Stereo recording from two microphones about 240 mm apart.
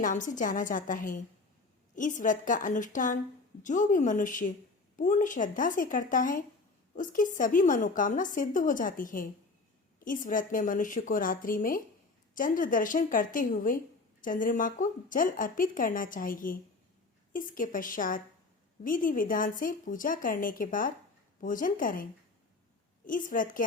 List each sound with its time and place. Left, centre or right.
0.0 s a woman's voice: left
23.0 s a woman's voice: left